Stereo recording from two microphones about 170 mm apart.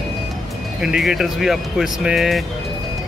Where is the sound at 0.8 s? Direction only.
5° right (ahead or behind).